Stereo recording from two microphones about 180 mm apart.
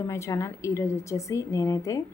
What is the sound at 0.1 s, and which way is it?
A woman's voice, 15° left (ahead or behind).